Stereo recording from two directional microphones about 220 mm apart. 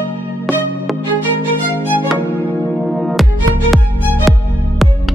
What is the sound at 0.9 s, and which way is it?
Music, centre (ahead or behind).